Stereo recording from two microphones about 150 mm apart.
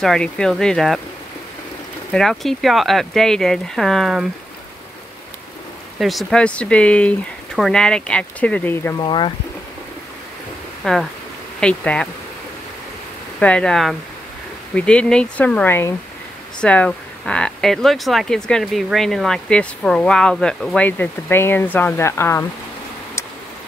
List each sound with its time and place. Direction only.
0.0 s speech: 5° left (ahead or behind)
2.1 s speech: centre (ahead or behind)
5.9 s speech: centre (ahead or behind)
8.9 s speech: 30° left (ahead or behind)
10.8 s speech: centre (ahead or behind)
13.4 s speech: 5° left (ahead or behind)